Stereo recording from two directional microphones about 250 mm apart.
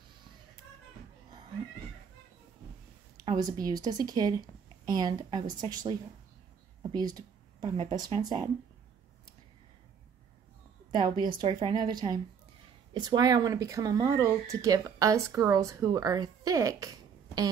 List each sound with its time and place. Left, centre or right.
3.3 s speech: centre
6.8 s speech: centre
10.9 s speech: centre